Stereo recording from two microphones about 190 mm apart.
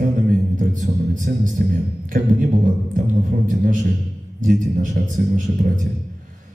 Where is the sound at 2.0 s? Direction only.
45° right (ahead or behind).